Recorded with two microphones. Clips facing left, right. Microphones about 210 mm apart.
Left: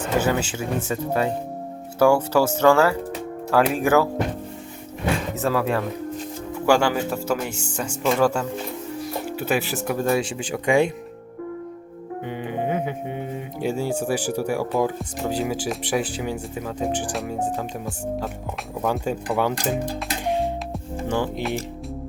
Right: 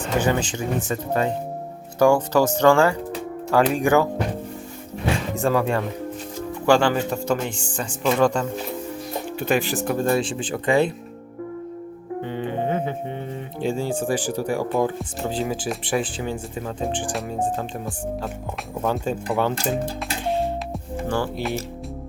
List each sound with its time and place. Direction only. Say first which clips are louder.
0.0 s speech: even; 5° left (ahead or behind)
5.3 s speech: right 3 dB; 5° left (ahead or behind)
12.2 s speech: right 1 dB; 10° left (ahead or behind)
18.9 s speech: even; centre (ahead or behind)
19.4 s speech: even; 10° left (ahead or behind)